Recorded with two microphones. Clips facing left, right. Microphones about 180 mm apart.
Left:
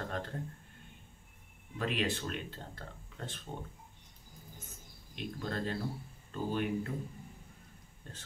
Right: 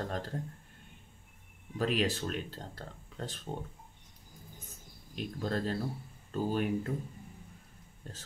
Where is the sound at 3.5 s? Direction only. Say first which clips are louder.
Right 4 dB; 35° right (ahead or behind).